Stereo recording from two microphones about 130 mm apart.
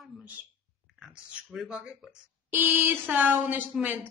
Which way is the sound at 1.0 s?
5° right (ahead or behind).